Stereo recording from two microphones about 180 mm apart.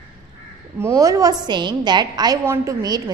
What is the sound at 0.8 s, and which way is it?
A woman's voice, 15° right (ahead or behind).